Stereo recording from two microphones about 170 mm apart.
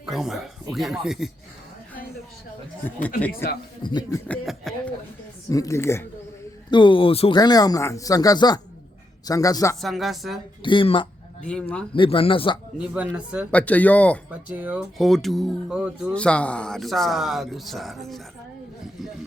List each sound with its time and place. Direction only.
0.0 s speech: centre (ahead or behind)
2.8 s speech: 10° left (ahead or behind)
3.8 s speech: 25° left (ahead or behind)
4.3 s speech: 5° left (ahead or behind)
5.5 s speech: 20° left (ahead or behind)
6.7 s speech: 30° left (ahead or behind)
7.3 s speech: 25° left (ahead or behind)
9.8 s speech: centre (ahead or behind)
10.6 s speech: 30° left (ahead or behind)
12.8 s speech: 5° right (ahead or behind)
13.5 s speech: 10° left (ahead or behind)
14.3 s speech: 10° right (ahead or behind)